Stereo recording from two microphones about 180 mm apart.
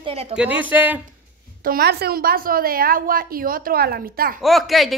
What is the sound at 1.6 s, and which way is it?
A woman's voice, 60° right (ahead or behind).